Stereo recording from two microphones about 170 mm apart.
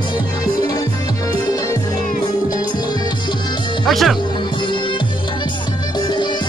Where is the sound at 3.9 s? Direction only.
Centre (ahead or behind).